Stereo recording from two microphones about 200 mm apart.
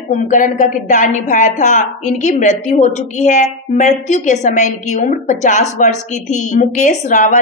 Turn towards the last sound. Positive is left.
turn(degrees=40)  # may be behind; listen again after turning